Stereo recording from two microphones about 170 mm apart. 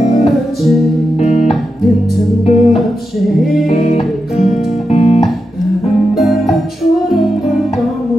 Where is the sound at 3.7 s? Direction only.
40° left (ahead or behind).